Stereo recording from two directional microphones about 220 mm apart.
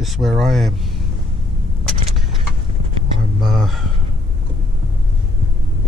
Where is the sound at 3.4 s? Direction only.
Centre (ahead or behind).